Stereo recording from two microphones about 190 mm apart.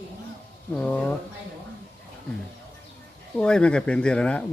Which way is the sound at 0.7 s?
5° left (ahead or behind).